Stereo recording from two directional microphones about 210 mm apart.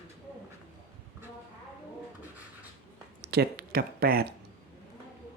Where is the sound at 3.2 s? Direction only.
50° right (ahead or behind).